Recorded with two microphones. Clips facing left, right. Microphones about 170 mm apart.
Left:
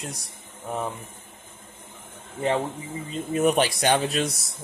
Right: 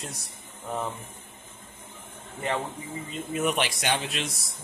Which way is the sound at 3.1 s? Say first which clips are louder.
Left 6 dB; 40° left (ahead or behind).